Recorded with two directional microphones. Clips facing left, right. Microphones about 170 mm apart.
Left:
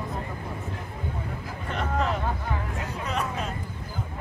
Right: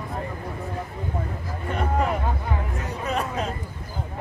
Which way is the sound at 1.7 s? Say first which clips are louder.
Right 3 dB; 10° right (ahead or behind).